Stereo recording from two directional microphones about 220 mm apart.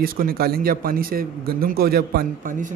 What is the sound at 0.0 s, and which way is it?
A man's voice, 40° right (ahead or behind).